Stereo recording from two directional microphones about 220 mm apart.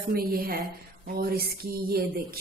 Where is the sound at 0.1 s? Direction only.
40° right (ahead or behind).